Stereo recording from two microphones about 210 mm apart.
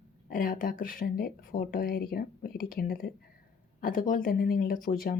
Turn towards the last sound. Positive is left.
turn(degrees=40)  # may be behind; listen again after turning